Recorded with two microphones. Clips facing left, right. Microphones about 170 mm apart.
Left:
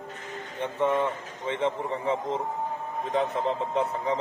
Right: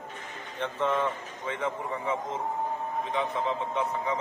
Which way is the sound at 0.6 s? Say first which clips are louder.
Left 2 dB; 15° left (ahead or behind).